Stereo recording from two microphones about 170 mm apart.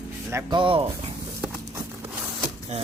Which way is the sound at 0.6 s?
30° right (ahead or behind).